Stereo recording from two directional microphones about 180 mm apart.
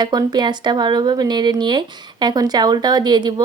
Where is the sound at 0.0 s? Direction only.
25° right (ahead or behind).